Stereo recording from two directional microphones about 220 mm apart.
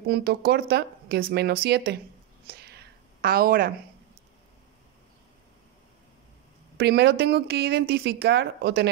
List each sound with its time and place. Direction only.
0.0 s speech: 45° right (ahead or behind)
2.4 s a sound: 45° right (ahead or behind)
6.8 s speech: 50° right (ahead or behind)